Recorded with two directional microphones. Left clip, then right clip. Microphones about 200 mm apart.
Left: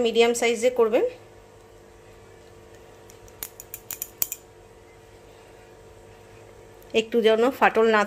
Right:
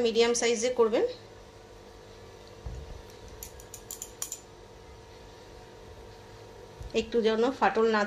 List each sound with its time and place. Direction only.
0.0 s a woman's voice: 55° left (ahead or behind)
6.9 s speech: 60° left (ahead or behind)